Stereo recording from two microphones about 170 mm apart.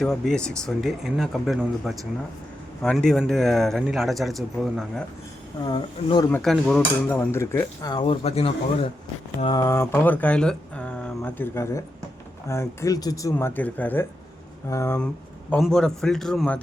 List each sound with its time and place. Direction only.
0.0 s a man's voice: 5° left (ahead or behind)
5.6 s speech: 25° left (ahead or behind)
6.3 s a man's voice: centre (ahead or behind)
7.3 s speech: 15° left (ahead or behind); by 8.9 s 35° left (ahead or behind)
9.4 s speech: 25° left (ahead or behind)
9.8 s a man's voice: 10° left (ahead or behind)